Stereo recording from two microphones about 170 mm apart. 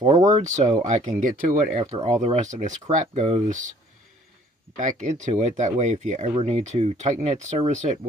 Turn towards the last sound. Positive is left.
turn(degrees=-45)  # may be behind; listen again after turning